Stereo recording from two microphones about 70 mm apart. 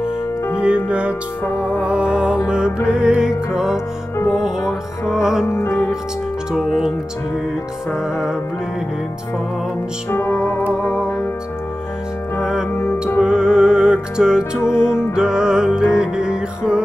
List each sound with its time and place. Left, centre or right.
0.8 s music: centre
5.5 s music: left
6.5 s speech: centre
7.9 s music: centre
10.1 s music: left
12.4 s music: centre